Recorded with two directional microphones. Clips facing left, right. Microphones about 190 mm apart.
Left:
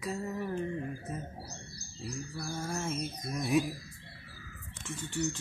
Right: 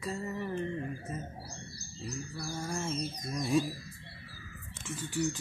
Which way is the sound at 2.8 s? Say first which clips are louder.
Even; 5° left (ahead or behind).